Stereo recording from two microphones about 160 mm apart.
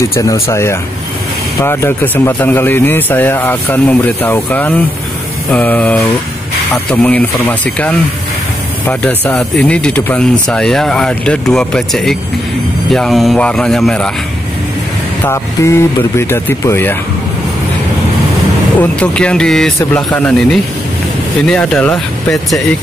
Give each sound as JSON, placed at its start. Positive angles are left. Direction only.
{"t": 0.1, "sound": "speech", "side_deg": 20}
{"t": 15.2, "sound": "speech", "side_deg": 15}
{"t": 18.8, "sound": "speech", "side_deg": 5}